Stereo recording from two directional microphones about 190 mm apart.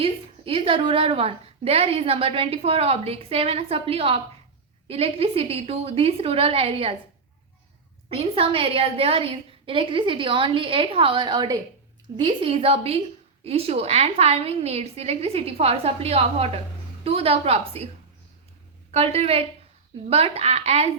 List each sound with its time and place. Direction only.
0.0 s a woman's voice: 30° right (ahead or behind)
8.1 s a woman's voice: 30° right (ahead or behind)
18.9 s a woman's voice: 30° right (ahead or behind)